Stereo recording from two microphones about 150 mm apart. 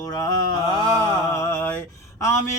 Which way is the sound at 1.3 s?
20° left (ahead or behind).